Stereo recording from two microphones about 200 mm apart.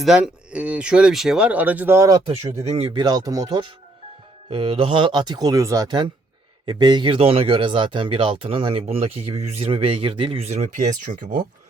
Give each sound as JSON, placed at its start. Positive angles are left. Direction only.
{"t": 0.0, "sound": "speech", "side_deg": -5}
{"t": 2.5, "sound": "speech", "side_deg": -30}